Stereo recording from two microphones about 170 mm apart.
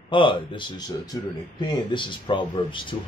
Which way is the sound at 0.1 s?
30° left (ahead or behind).